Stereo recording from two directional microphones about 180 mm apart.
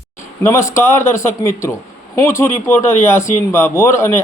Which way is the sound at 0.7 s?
15° left (ahead or behind).